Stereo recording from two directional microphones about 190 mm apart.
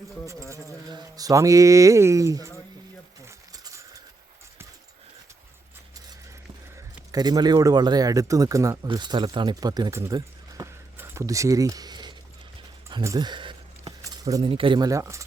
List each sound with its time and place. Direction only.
0.9 s speech: 20° right (ahead or behind)
3.2 s a sound: 15° right (ahead or behind)
7.1 s a man's voice: 20° right (ahead or behind)